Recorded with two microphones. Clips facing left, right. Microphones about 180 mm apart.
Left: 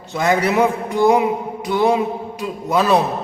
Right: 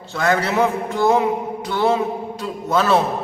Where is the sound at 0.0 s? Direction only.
15° left (ahead or behind).